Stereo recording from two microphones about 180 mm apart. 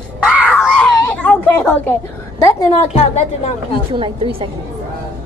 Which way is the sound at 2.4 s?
15° left (ahead or behind).